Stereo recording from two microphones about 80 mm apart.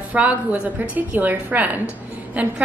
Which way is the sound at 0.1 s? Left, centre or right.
Centre.